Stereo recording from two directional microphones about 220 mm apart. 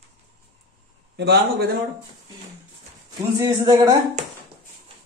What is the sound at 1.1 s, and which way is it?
Speech, 50° right (ahead or behind).